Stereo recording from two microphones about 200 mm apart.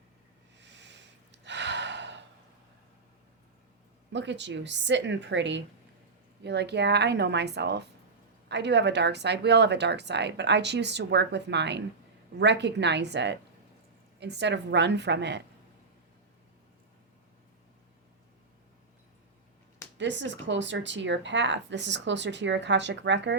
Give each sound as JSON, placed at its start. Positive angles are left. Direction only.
{"t": 0.6, "sound": "gasp", "side_deg": -60}
{"t": 4.1, "sound": "speech", "side_deg": -60}
{"t": 20.0, "sound": "speech", "side_deg": -65}